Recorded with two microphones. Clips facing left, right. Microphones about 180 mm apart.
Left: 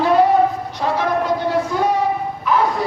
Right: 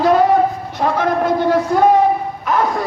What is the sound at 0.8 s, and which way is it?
Shofar, 50° right (ahead or behind).